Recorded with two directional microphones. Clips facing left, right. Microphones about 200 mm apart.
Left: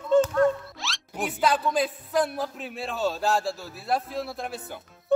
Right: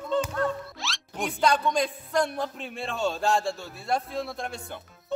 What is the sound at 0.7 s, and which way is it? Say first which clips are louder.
Speech: left 1 dB; centre (ahead or behind).